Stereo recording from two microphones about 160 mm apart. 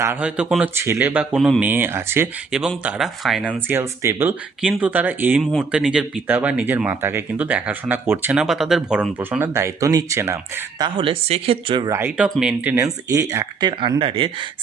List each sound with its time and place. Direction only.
0.0 s speech: 10° right (ahead or behind)
1.2 s speech: centre (ahead or behind)
2.5 s speech: 5° right (ahead or behind)
3.7 s speech: 15° right (ahead or behind); by 11.9 s 35° right (ahead or behind)
11.9 s speech: 15° right (ahead or behind)
12.7 s speech: 20° right (ahead or behind)